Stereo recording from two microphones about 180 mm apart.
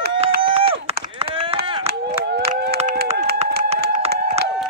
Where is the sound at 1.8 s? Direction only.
65° right (ahead or behind).